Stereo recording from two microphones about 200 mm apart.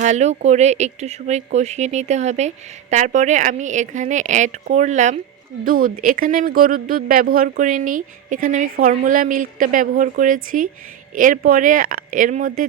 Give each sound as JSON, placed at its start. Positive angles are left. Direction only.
{"t": 0.0, "sound": "speech", "side_deg": -35}